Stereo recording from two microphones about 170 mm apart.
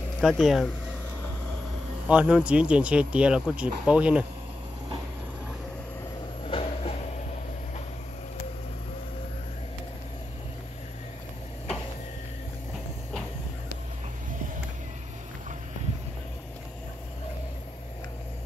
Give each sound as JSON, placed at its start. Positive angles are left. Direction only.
{"t": 0.2, "sound": "speech", "side_deg": 0}
{"t": 2.0, "sound": "speech", "side_deg": -5}
{"t": 6.4, "sound": "train", "side_deg": 35}